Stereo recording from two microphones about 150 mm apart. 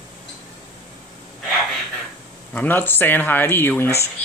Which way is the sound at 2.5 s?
10° left (ahead or behind).